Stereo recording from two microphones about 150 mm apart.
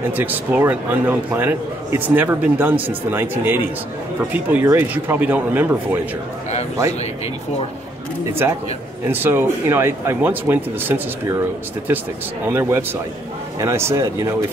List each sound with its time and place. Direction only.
0.1 s a man's voice: 10° right (ahead or behind)
8.3 s a man's voice: 15° right (ahead or behind)
12.5 s a man's voice: 15° right (ahead or behind)